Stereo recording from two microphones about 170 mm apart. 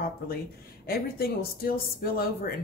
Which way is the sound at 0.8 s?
60° left (ahead or behind).